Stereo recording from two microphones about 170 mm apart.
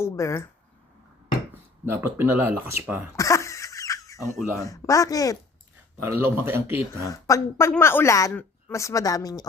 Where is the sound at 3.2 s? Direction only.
20° left (ahead or behind).